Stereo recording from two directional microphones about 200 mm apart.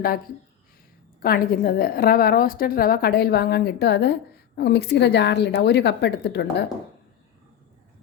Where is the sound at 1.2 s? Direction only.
50° left (ahead or behind).